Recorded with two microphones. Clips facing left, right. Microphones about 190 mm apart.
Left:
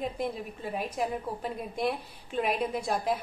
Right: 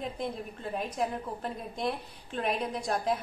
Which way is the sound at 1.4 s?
5° left (ahead or behind).